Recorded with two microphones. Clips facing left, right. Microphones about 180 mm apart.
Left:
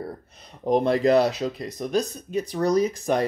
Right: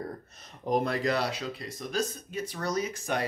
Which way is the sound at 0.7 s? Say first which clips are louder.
Left 8 dB; 30° left (ahead or behind).